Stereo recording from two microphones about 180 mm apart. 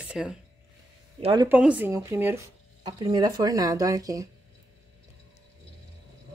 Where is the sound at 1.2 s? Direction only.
25° right (ahead or behind).